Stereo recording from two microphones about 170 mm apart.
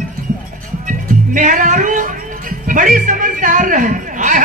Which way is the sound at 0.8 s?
50° right (ahead or behind).